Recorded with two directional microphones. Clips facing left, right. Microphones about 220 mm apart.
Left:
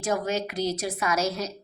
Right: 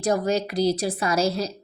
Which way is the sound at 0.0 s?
35° right (ahead or behind).